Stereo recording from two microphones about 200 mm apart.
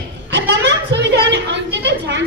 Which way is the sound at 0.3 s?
60° right (ahead or behind).